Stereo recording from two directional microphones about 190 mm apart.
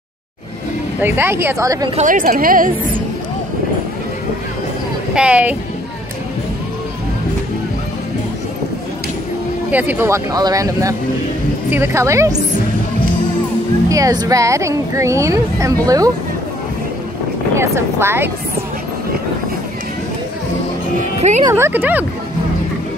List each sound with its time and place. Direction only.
1.0 s speech: 10° right (ahead or behind)
1.9 s a woman's voice: 40° right (ahead or behind)
5.1 s speech: 5° right (ahead or behind)
9.7 s speech: 10° right (ahead or behind)
13.8 s speech: 15° right (ahead or behind)
17.6 s speech: 15° right (ahead or behind)
21.5 s speech: 15° right (ahead or behind)